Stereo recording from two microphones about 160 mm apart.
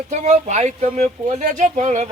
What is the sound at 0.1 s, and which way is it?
Speech, 45° right (ahead or behind).